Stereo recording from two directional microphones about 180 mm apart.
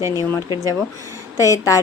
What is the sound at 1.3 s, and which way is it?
Speech, 15° left (ahead or behind).